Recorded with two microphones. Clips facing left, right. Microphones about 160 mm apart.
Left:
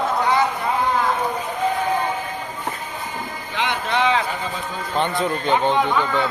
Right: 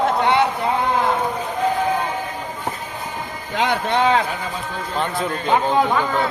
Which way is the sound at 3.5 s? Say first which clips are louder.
Right 3 dB; 40° right (ahead or behind).